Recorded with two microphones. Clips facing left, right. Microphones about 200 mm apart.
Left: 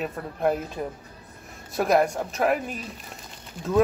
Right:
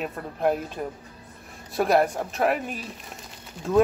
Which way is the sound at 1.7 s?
Centre (ahead or behind).